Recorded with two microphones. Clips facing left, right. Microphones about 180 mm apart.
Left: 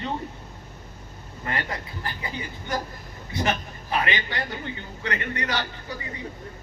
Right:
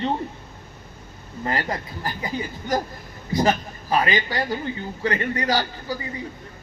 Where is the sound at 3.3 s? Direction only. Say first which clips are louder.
Right 6 dB; 35° right (ahead or behind).